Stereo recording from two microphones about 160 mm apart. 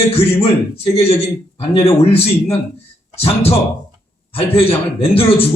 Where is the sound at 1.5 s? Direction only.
35° left (ahead or behind).